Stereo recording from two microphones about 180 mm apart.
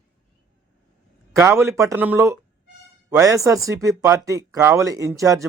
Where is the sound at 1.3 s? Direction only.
15° right (ahead or behind).